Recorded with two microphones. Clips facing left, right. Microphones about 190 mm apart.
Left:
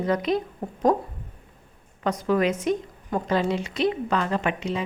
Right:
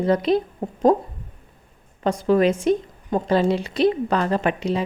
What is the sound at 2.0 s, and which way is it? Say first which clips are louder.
A woman's voice: right 5 dB; 30° right (ahead or behind).